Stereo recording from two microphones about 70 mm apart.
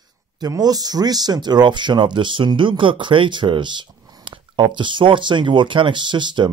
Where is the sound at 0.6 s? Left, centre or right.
Right.